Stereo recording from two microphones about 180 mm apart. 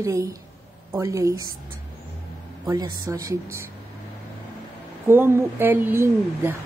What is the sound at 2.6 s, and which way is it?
Speech, 20° right (ahead or behind).